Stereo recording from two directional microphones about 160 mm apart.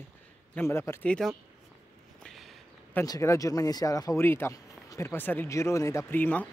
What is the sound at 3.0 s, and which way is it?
Speech, 20° left (ahead or behind).